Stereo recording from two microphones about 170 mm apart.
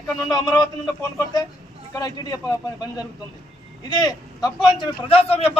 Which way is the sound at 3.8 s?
25° left (ahead or behind).